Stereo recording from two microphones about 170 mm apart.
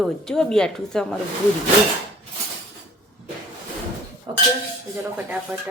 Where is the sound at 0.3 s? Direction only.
5° left (ahead or behind).